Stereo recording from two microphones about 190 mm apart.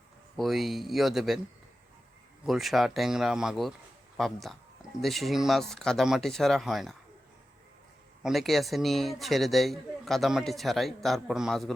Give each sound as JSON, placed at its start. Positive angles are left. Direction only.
{"t": 0.3, "sound": "speech", "side_deg": 0}
{"t": 2.5, "sound": "speech", "side_deg": 0}
{"t": 8.2, "sound": "speech", "side_deg": 0}